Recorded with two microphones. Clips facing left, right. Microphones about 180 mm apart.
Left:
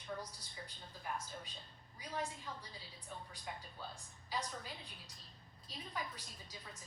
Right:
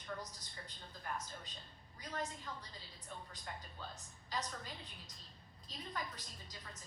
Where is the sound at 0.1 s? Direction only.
15° left (ahead or behind).